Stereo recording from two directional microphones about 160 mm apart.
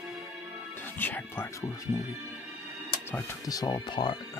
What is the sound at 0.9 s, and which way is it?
Speech, 10° left (ahead or behind).